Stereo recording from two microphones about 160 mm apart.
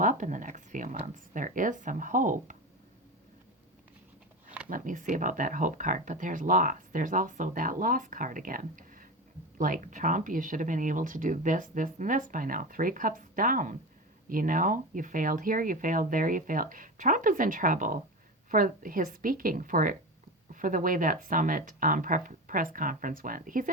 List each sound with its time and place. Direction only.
0.0 s speech: 55° right (ahead or behind)
4.7 s speech: 55° right (ahead or behind)